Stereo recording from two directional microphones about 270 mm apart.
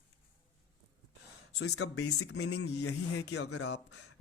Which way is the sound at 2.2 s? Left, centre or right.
Left.